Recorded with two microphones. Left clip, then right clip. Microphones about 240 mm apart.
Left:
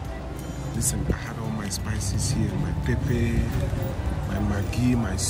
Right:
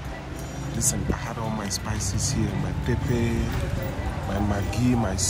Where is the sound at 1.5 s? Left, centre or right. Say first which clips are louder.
Right 2 dB; centre.